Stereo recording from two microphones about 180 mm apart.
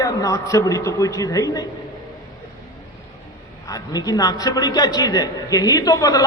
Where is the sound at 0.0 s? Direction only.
20° left (ahead or behind).